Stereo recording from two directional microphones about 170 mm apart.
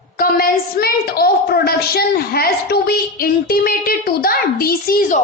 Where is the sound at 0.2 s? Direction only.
60° left (ahead or behind).